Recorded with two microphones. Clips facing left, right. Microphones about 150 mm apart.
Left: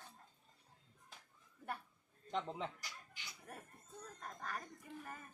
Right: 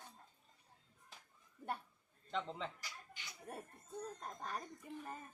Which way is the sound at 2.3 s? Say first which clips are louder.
Left 1 dB; 15° left (ahead or behind).